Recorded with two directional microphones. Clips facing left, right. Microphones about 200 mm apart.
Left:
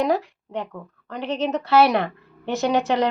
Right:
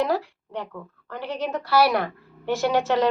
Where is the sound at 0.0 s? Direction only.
20° left (ahead or behind).